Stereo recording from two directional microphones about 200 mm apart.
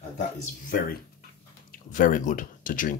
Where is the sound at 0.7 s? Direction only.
45° left (ahead or behind).